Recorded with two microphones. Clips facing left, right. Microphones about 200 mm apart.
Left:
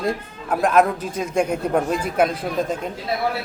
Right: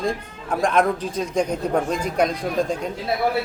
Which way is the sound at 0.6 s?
5° left (ahead or behind).